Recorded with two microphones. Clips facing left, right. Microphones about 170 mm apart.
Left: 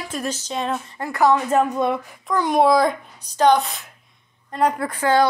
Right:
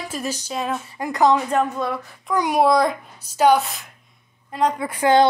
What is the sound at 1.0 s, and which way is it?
Speech, 20° right (ahead or behind).